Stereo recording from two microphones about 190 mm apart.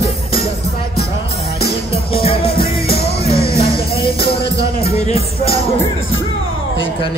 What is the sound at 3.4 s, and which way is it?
Music, 30° left (ahead or behind).